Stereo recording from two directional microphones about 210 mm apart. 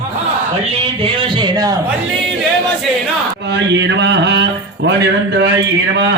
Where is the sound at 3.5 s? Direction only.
55° right (ahead or behind).